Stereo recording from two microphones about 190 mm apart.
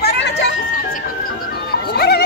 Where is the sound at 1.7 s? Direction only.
55° left (ahead or behind).